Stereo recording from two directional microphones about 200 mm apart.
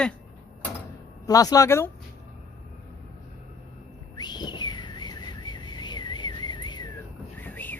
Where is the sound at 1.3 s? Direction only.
15° left (ahead or behind).